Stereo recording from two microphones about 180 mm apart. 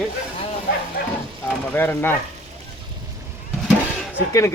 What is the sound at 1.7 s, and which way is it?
Speech, 10° left (ahead or behind).